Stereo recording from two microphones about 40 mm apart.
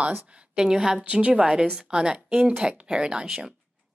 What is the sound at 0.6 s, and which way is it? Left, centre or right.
Speech, centre.